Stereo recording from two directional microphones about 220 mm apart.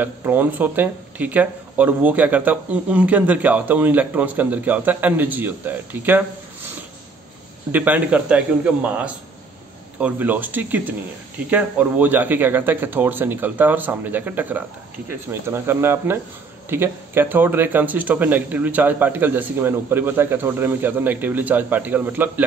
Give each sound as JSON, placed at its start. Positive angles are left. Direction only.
{"t": 0.0, "sound": "speech", "side_deg": -10}
{"t": 7.7, "sound": "speech", "side_deg": -5}